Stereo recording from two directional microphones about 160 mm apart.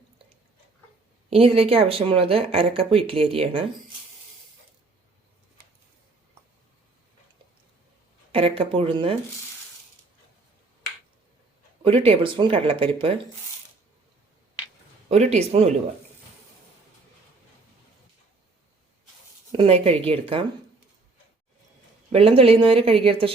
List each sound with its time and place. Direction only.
1.3 s speech: 35° right (ahead or behind)
8.3 s speech: 35° right (ahead or behind)
11.8 s speech: 35° right (ahead or behind)
15.1 s speech: 45° right (ahead or behind)
19.5 s speech: 40° right (ahead or behind)
22.1 s speech: 35° right (ahead or behind)